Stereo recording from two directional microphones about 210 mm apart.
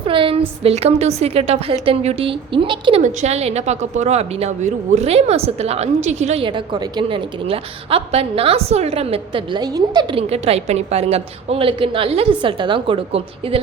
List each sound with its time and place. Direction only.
0.1 s a woman's voice: 25° right (ahead or behind)